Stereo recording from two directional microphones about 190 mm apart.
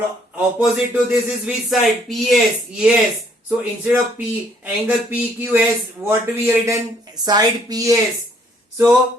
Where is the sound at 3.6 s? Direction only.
10° right (ahead or behind).